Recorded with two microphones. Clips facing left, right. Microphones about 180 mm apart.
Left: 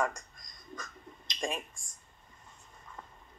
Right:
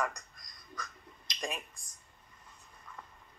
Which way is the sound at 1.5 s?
45° left (ahead or behind).